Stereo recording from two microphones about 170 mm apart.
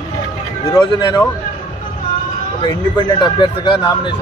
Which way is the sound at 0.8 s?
25° left (ahead or behind).